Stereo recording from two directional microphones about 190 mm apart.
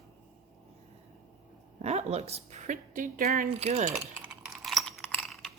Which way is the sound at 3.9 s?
5° right (ahead or behind).